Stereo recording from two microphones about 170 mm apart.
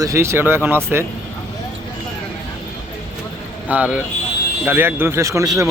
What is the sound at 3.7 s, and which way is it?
A man's voice, 10° right (ahead or behind).